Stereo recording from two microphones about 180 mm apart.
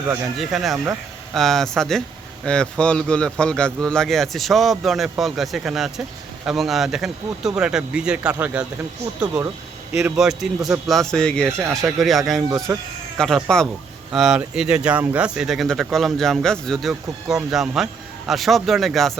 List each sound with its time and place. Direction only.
0.3 s speech: centre (ahead or behind)
9.9 s speech: centre (ahead or behind)
12.5 s speech: 20° right (ahead or behind)
13.1 s speech: 5° left (ahead or behind)